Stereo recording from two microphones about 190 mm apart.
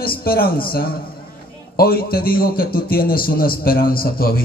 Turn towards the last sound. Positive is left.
turn(degrees=50)  # may be behind; listen again after turning